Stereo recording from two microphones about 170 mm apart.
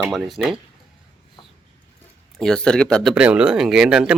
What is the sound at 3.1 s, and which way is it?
Speech, 5° right (ahead or behind).